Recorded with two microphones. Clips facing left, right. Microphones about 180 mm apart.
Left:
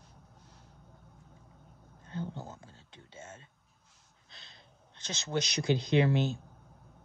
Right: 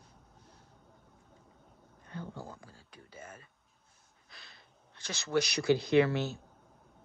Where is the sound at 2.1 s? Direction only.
25° left (ahead or behind).